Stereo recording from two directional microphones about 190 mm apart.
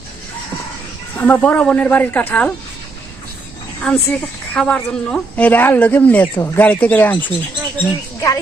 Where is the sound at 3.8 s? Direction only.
5° left (ahead or behind).